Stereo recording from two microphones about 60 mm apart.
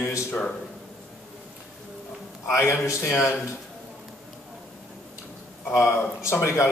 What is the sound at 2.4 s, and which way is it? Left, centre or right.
Speech, left.